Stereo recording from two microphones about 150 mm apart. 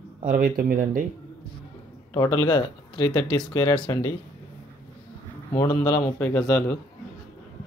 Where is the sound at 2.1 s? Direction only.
25° left (ahead or behind).